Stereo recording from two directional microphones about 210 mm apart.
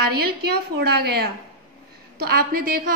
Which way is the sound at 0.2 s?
50° right (ahead or behind).